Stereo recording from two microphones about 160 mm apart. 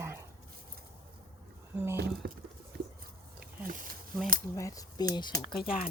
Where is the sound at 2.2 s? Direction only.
70° right (ahead or behind).